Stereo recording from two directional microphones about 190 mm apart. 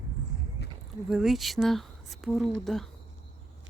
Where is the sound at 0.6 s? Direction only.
60° left (ahead or behind).